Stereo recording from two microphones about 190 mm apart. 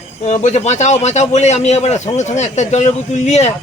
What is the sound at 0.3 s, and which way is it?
A man's voice, 35° left (ahead or behind).